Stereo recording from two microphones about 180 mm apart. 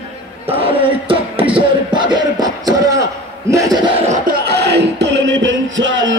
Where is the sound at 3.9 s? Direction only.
40° right (ahead or behind).